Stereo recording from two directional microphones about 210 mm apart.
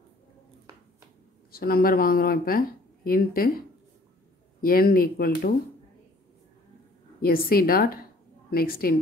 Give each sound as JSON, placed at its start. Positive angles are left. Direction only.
{"t": 1.5, "sound": "speech", "side_deg": 45}
{"t": 4.6, "sound": "speech", "side_deg": 45}
{"t": 7.2, "sound": "speech", "side_deg": 45}